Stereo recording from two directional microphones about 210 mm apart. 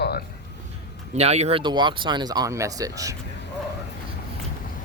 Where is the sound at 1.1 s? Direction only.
30° right (ahead or behind); by 3.1 s 15° right (ahead or behind).